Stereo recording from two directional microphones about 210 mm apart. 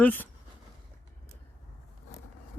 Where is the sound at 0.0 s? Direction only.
10° left (ahead or behind).